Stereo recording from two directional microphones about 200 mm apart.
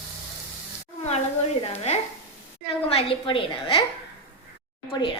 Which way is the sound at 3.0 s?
25° left (ahead or behind).